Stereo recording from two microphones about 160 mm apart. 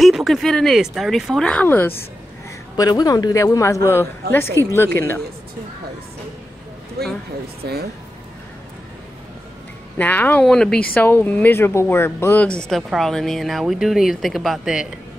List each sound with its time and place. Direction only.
0.0 s speech: centre (ahead or behind)
2.7 s a man's voice: 25° left (ahead or behind)
7.0 s speech: 75° right (ahead or behind)
9.9 s a woman's voice: 10° left (ahead or behind)